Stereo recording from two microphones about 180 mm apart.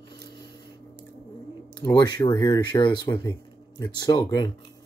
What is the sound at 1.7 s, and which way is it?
Speech, 20° left (ahead or behind).